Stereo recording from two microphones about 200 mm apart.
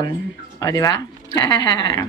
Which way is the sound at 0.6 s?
20° left (ahead or behind).